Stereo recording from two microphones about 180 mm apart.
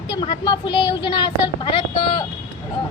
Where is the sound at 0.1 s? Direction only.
30° left (ahead or behind).